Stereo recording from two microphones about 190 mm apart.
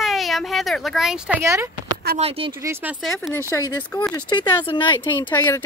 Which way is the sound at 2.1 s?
30° right (ahead or behind).